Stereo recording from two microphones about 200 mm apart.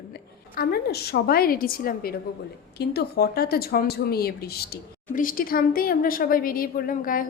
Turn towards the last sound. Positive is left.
turn(degrees=45)  # may be behind; listen again after turning